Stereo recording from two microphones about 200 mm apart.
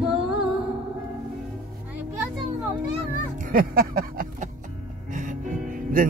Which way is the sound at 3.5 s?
45° right (ahead or behind).